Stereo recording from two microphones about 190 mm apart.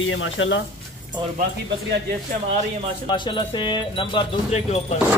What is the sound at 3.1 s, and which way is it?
Speech, 25° left (ahead or behind).